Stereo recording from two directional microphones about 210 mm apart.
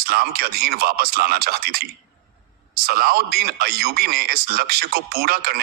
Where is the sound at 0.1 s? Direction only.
50° right (ahead or behind).